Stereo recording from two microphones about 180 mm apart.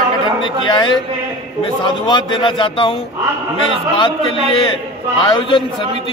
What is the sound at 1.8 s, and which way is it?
A man's voice, 25° left (ahead or behind).